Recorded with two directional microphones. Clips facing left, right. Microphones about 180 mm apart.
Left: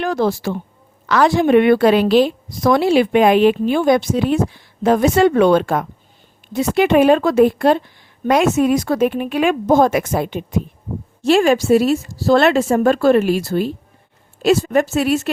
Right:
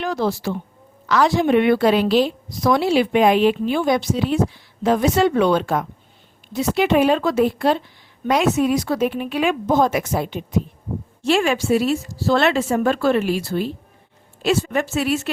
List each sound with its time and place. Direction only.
0.0 s a woman's voice: 55° left (ahead or behind)
11.2 s a woman's voice: 40° left (ahead or behind)